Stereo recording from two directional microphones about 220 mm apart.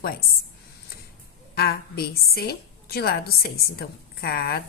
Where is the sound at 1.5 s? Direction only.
45° left (ahead or behind).